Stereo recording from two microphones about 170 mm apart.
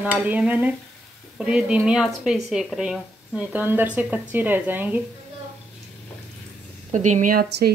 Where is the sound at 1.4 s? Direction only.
5° right (ahead or behind).